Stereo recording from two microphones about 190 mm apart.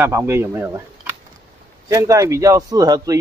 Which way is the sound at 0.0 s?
10° right (ahead or behind).